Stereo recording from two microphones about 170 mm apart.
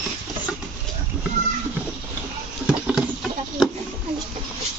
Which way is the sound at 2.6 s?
5° right (ahead or behind).